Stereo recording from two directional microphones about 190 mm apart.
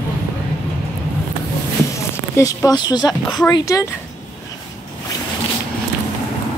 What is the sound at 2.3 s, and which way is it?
Speech, 15° left (ahead or behind).